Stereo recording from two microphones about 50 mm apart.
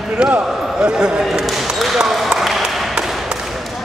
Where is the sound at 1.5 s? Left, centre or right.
Centre.